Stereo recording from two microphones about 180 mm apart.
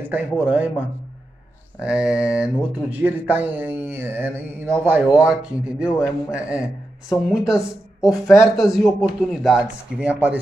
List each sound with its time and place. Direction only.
0.0 s speech: 10° right (ahead or behind)
7.5 s speech: 20° left (ahead or behind)
8.3 s speech: 5° right (ahead or behind)